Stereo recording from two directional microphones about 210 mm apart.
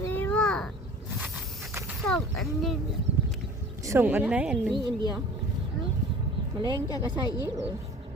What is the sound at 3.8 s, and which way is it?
Speech, 10° right (ahead or behind).